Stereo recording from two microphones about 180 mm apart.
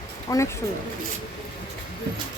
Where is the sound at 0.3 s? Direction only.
15° left (ahead or behind).